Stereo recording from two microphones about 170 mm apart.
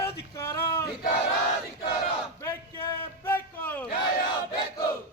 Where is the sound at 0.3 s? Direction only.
15° left (ahead or behind).